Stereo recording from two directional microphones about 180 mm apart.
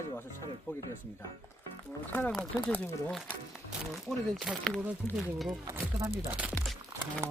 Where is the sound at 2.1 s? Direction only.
5° left (ahead or behind).